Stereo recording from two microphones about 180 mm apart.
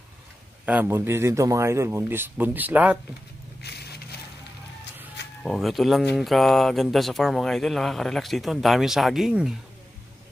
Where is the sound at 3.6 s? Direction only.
65° left (ahead or behind).